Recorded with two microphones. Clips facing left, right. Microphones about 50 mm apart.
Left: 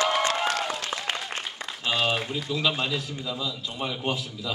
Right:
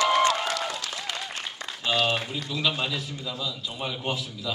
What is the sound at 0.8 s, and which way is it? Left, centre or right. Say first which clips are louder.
Applause: left 3 dB; left.